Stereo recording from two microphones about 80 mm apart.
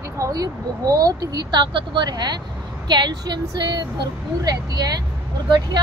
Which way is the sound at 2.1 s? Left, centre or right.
Right.